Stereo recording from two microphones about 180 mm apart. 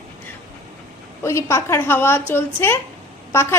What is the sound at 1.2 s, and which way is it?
A woman's voice, 15° left (ahead or behind).